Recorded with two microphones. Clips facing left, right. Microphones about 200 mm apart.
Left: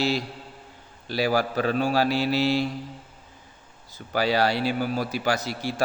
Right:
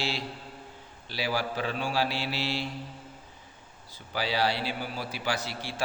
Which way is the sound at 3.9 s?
45° left (ahead or behind).